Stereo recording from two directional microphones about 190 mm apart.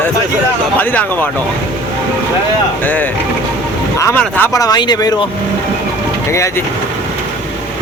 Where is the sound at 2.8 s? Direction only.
10° left (ahead or behind).